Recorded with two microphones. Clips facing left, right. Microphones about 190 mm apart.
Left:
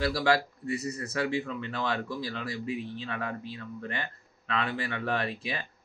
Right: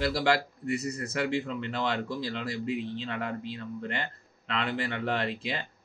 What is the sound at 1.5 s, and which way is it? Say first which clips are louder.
Speech: right 1 dB; 20° right (ahead or behind).